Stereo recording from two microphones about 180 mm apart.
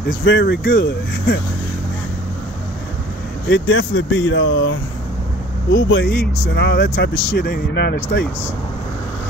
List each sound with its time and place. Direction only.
0.2 s speech: 90° left; by 1.4 s 70° left (ahead or behind)
3.4 s speech: 90° left; by 8.3 s 65° left (ahead or behind)